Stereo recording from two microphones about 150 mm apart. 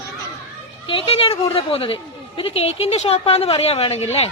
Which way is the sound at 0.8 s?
40° left (ahead or behind).